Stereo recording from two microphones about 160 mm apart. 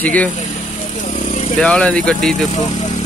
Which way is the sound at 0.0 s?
10° left (ahead or behind).